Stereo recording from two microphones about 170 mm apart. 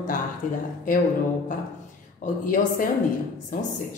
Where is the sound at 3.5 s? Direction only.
50° left (ahead or behind).